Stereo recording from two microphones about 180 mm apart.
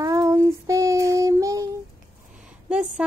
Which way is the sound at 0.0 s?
15° right (ahead or behind).